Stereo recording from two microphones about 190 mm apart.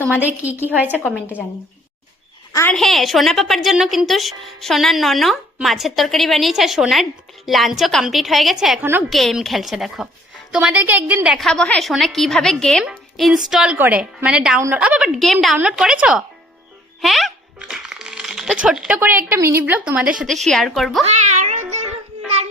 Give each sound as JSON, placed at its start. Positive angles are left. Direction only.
{"t": 0.5, "sound": "a woman's voice", "side_deg": 10}
{"t": 0.8, "sound": "speech", "side_deg": -10}
{"t": 2.5, "sound": "a woman's voice", "side_deg": 15}
{"t": 2.7, "sound": "a woman's voice", "side_deg": 0}
{"t": 17.0, "sound": "music", "side_deg": 0}
{"t": 18.6, "sound": "a woman's voice", "side_deg": -5}
{"t": 21.0, "sound": "music", "side_deg": -35}